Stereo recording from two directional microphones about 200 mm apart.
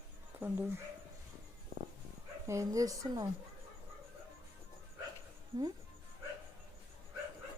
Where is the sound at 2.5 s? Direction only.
15° right (ahead or behind).